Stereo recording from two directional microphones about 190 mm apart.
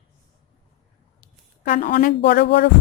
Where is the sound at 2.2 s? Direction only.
60° left (ahead or behind).